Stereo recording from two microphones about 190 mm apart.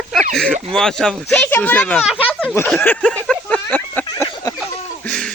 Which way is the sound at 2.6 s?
10° left (ahead or behind).